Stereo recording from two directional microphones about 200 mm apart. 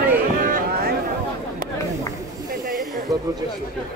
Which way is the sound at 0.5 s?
45° right (ahead or behind).